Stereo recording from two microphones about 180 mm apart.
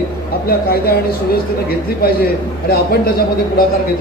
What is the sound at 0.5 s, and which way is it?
Speech, 55° left (ahead or behind).